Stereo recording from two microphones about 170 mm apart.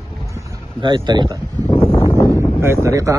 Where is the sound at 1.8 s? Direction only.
10° left (ahead or behind).